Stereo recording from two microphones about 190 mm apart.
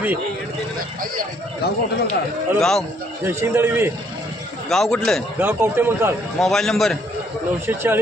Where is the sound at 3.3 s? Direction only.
10° right (ahead or behind).